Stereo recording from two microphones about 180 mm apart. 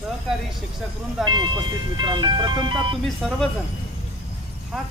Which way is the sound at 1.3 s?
25° right (ahead or behind).